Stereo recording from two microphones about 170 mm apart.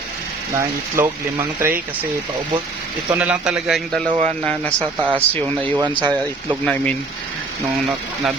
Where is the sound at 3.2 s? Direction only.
5° right (ahead or behind).